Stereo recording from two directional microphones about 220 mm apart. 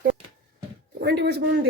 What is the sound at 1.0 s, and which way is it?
Speech, 50° right (ahead or behind).